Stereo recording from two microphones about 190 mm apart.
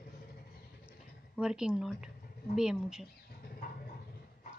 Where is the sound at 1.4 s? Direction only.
5° right (ahead or behind).